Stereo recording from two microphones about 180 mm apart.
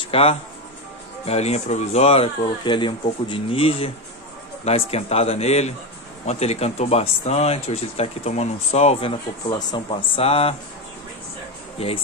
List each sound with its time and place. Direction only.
0.0 s speech: 30° left (ahead or behind)